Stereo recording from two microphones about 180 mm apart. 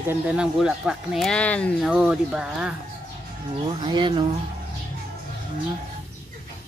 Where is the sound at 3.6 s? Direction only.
25° right (ahead or behind).